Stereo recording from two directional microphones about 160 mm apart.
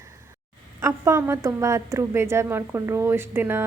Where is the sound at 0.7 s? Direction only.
15° right (ahead or behind).